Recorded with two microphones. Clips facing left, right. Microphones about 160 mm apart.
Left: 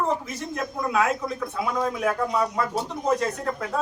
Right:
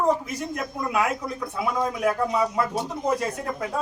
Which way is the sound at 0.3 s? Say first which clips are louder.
Right 1 dB; 10° right (ahead or behind).